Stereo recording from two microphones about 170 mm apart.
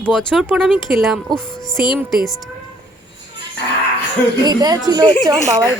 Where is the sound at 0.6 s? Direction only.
Centre (ahead or behind).